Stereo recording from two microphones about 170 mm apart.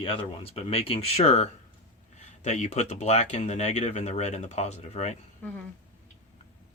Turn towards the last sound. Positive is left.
turn(degrees=10)  # may be behind; listen again after turning